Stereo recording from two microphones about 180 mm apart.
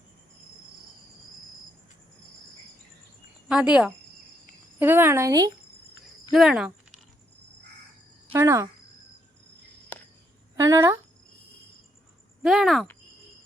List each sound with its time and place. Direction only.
3.5 s speech: 5° right (ahead or behind)
6.3 s speech: 5° right (ahead or behind)
8.3 s speech: 15° right (ahead or behind)
9.9 s a sound: 10° left (ahead or behind)
10.6 s speech: 15° right (ahead or behind)
12.4 s speech: centre (ahead or behind)